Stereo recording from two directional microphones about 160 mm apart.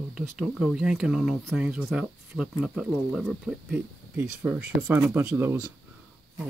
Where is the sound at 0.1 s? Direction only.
5° right (ahead or behind).